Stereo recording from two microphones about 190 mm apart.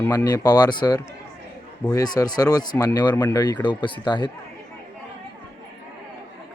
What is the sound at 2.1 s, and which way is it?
Speech, 20° left (ahead or behind).